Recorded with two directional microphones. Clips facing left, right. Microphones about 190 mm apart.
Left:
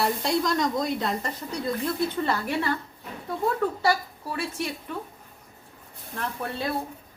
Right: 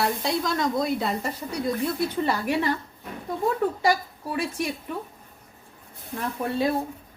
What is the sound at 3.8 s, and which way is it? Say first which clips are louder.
Speech: right 1 dB; 15° right (ahead or behind).